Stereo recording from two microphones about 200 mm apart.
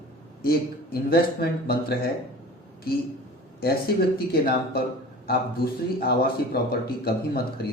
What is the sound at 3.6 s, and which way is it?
Speech, 50° left (ahead or behind).